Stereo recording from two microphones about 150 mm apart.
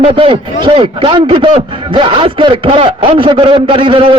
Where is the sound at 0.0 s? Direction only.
35° right (ahead or behind).